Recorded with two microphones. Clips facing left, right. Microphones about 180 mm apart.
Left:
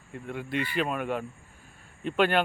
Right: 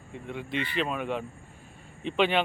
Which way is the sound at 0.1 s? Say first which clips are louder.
Left 1 dB; 5° left (ahead or behind).